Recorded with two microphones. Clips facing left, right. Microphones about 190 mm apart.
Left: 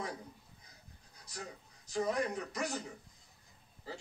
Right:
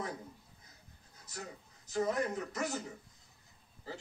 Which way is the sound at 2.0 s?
5° right (ahead or behind).